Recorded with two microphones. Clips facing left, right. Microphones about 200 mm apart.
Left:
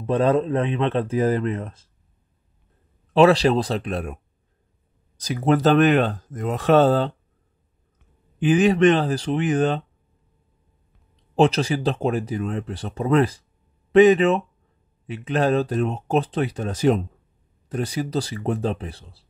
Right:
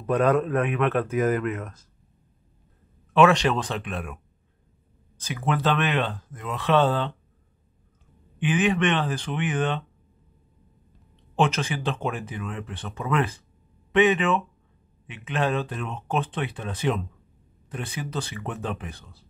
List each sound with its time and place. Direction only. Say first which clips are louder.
0.0 s speech: left 2 dB; 30° left (ahead or behind)
3.1 s speech: left 4 dB; 35° left (ahead or behind)
8.4 s speech: left 6 dB; 40° left (ahead or behind)
11.3 s speech: left 6 dB; 35° left (ahead or behind)